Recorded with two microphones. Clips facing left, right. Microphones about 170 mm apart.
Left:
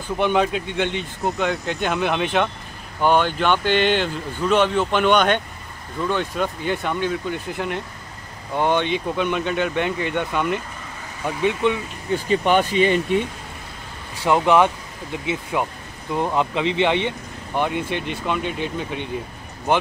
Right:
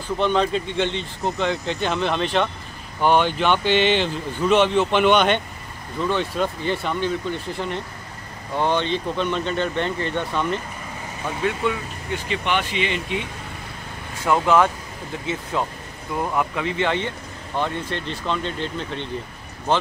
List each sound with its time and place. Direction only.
0.2 s speech: 10° left (ahead or behind)
11.6 s speech: 20° left (ahead or behind)
12.1 s speech: 40° left (ahead or behind)
14.2 s speech: 20° left (ahead or behind)